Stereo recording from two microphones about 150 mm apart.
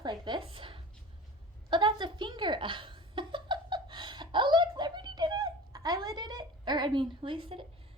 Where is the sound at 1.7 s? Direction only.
30° right (ahead or behind).